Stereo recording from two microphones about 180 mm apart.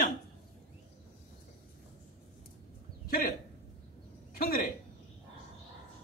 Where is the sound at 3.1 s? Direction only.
50° left (ahead or behind).